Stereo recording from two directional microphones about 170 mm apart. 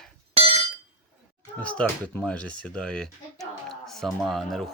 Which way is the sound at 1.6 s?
5° left (ahead or behind).